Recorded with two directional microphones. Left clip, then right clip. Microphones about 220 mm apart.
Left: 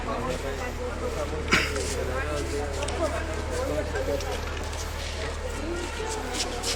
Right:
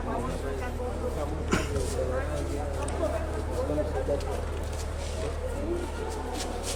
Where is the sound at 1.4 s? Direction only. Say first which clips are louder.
Left 8 dB; 25° right (ahead or behind).